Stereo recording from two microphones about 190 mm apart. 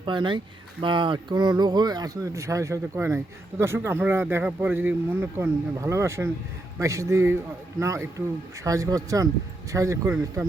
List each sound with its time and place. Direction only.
0.0 s speech: 25° right (ahead or behind)